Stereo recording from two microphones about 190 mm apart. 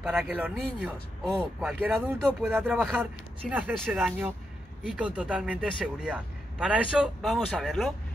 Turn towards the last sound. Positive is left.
turn(degrees=0)  # may be behind; listen again after turning